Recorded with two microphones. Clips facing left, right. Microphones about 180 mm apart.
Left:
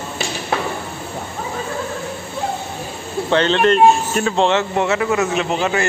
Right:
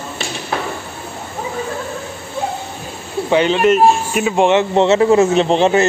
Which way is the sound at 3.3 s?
10° right (ahead or behind).